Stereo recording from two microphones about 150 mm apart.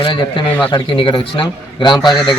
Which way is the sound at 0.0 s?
30° left (ahead or behind).